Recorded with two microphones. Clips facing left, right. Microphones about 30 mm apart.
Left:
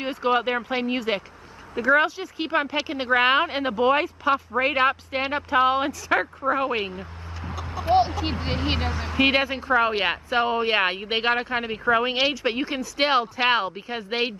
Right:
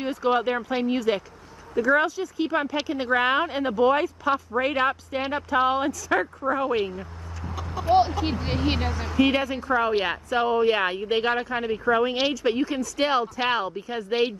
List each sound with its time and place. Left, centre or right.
0.0 s speech: left
7.9 s speech: centre
9.2 s speech: left